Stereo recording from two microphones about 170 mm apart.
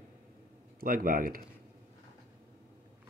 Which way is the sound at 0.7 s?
55° right (ahead or behind).